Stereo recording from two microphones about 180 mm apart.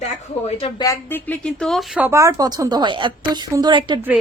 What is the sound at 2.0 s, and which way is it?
A woman's voice, 15° right (ahead or behind).